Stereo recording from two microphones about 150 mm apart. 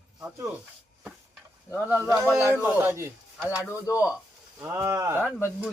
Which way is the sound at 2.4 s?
15° right (ahead or behind).